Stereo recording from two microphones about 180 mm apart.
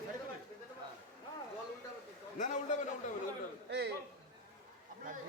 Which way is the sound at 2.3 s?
45° left (ahead or behind).